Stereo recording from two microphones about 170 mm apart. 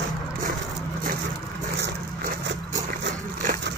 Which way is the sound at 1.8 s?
90° right.